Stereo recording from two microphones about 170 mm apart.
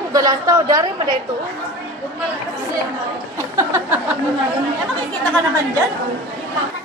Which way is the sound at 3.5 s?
10° right (ahead or behind).